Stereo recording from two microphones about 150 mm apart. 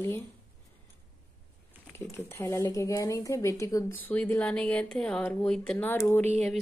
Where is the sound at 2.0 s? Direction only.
15° left (ahead or behind).